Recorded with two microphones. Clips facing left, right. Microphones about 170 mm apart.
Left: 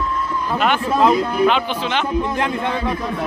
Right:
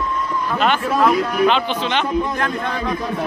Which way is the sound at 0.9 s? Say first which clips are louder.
Left 3 dB; 25° left (ahead or behind).